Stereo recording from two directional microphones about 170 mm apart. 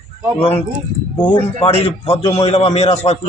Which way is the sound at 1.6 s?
35° left (ahead or behind).